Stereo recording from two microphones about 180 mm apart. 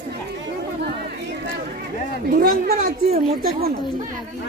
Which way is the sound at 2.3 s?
55° right (ahead or behind).